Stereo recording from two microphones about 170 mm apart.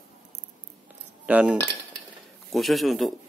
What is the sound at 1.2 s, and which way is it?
Cutlery, 10° right (ahead or behind).